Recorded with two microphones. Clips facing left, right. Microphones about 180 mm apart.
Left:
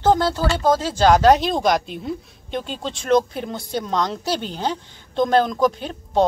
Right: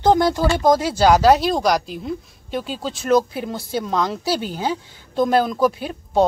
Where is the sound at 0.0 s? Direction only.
15° right (ahead or behind).